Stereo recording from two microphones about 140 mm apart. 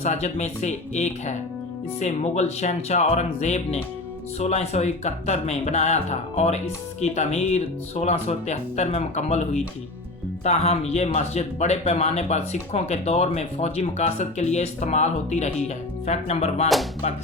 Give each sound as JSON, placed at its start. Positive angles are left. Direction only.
{"t": 0.0, "sound": "speech", "side_deg": 55}